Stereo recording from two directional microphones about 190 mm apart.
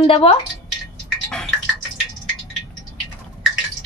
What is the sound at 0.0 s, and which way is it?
Speech, 30° left (ahead or behind).